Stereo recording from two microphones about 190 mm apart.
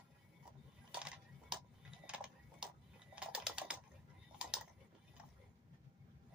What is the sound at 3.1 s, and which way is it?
Ratchet, 5° right (ahead or behind).